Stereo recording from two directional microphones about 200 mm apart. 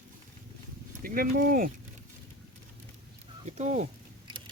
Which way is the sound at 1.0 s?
45° right (ahead or behind).